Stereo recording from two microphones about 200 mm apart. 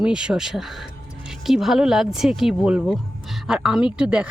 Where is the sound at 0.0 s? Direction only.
5° right (ahead or behind).